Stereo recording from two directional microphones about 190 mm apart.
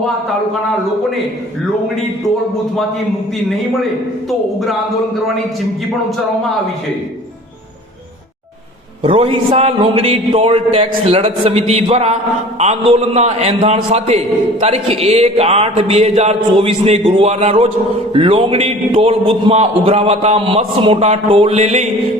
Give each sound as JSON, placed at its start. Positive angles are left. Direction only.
{"t": 9.0, "sound": "a man's voice", "side_deg": -30}